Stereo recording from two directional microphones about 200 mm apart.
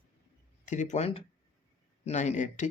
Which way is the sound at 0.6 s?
35° left (ahead or behind).